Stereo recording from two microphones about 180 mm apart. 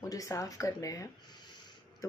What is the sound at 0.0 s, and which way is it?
Speech, 20° left (ahead or behind).